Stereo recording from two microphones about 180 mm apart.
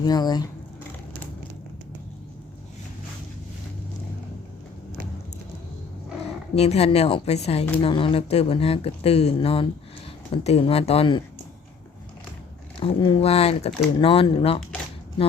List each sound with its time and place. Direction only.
0.0 s speech: 20° left (ahead or behind)
6.6 s speech: 35° left (ahead or behind)
12.8 s speech: 30° left (ahead or behind)